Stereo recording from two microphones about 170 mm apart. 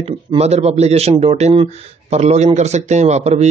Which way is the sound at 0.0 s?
35° right (ahead or behind).